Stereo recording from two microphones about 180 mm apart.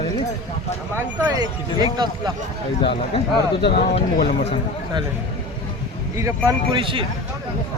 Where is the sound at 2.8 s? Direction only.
30° left (ahead or behind).